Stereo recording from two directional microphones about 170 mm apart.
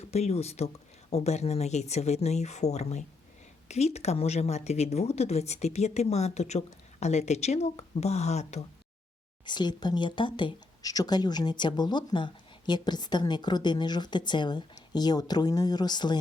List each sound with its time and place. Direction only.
0.0 s speech: 40° left (ahead or behind)
9.5 s speech: 25° left (ahead or behind)